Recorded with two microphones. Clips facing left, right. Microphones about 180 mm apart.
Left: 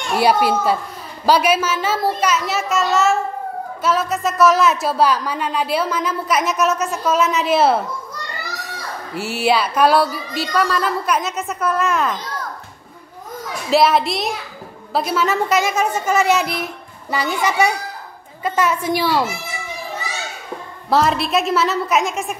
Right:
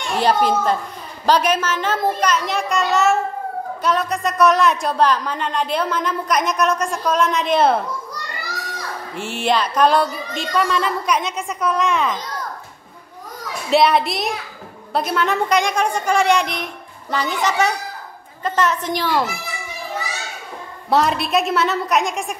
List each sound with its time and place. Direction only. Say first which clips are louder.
0.1 s a child's voice: left 1 dB; 10° left (ahead or behind)
9.1 s a woman's voice: left 2 dB; 5° left (ahead or behind)
13.7 s a woman's voice: even; centre (ahead or behind)
20.9 s a woman's voice: left 1 dB; centre (ahead or behind)